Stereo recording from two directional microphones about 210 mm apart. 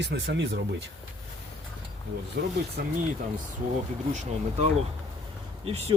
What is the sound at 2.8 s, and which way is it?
Speech, 45° right (ahead or behind).